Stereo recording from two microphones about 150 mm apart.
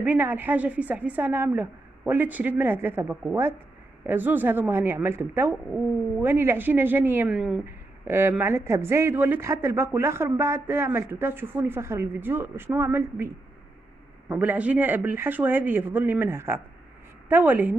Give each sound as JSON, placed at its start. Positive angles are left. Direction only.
{"t": 0.0, "sound": "a woman's voice", "side_deg": -10}
{"t": 7.6, "sound": "speech", "side_deg": -15}
{"t": 14.3, "sound": "speech", "side_deg": -10}